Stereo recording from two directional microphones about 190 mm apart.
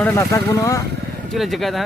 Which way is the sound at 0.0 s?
15° left (ahead or behind).